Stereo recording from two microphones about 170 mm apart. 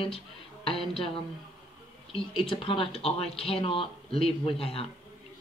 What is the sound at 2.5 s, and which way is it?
Speech, 30° left (ahead or behind).